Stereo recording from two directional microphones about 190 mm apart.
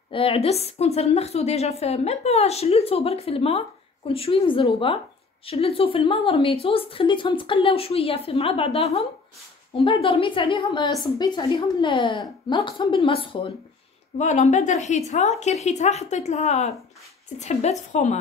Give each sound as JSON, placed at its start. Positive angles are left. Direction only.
{"t": 0.1, "sound": "a woman's voice", "side_deg": 30}